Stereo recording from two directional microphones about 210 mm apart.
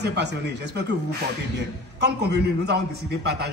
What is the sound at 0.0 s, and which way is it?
Speech, 55° right (ahead or behind).